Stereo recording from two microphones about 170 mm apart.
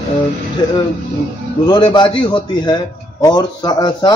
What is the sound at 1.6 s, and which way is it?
A man's voice, 25° left (ahead or behind).